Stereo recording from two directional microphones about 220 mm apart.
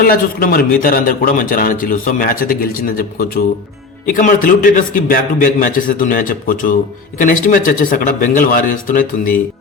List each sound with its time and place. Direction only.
0.0 s a man's voice: 40° left (ahead or behind)